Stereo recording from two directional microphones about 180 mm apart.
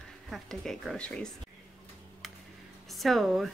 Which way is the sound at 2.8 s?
Centre (ahead or behind).